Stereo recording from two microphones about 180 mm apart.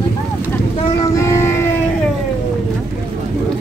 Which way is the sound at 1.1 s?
15° left (ahead or behind).